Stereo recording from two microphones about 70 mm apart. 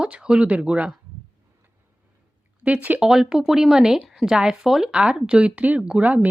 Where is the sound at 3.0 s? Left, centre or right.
Centre.